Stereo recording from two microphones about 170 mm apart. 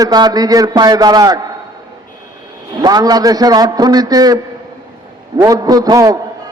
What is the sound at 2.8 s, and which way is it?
A man's voice, 25° right (ahead or behind).